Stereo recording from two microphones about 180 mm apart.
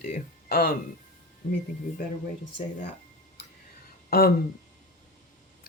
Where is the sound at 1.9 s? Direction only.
45° left (ahead or behind).